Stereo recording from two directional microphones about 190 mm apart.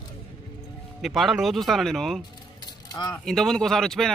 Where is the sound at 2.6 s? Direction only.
20° left (ahead or behind).